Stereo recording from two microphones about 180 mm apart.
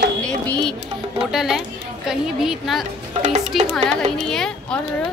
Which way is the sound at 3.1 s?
40° right (ahead or behind).